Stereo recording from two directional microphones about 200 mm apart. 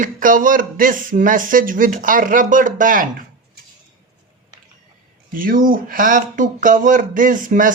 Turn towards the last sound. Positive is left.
turn(degrees=-40)  # may be behind; listen again after turning